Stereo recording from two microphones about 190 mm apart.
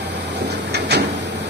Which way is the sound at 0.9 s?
60° right (ahead or behind).